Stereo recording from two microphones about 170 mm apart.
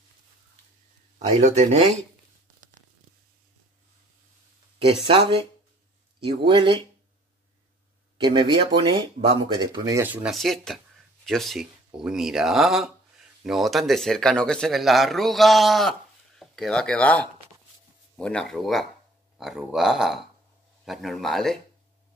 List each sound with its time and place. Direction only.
1.4 s speech: 40° right (ahead or behind)
5.0 s speech: 30° right (ahead or behind)
8.2 s speech: 30° right (ahead or behind)
10.0 s speech: 5° right (ahead or behind)